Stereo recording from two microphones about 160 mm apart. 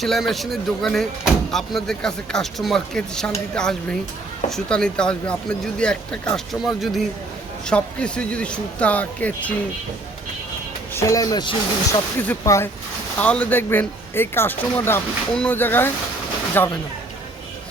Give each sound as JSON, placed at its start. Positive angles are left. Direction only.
{"t": 0.0, "sound": "speech", "side_deg": 0}
{"t": 7.7, "sound": "speech", "side_deg": 5}
{"t": 10.9, "sound": "speech", "side_deg": 20}